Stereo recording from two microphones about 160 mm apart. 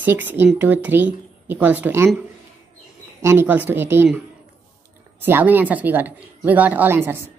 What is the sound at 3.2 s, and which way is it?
Speech, 15° right (ahead or behind).